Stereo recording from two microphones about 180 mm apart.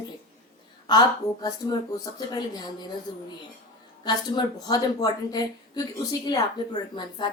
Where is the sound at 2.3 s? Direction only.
25° left (ahead or behind).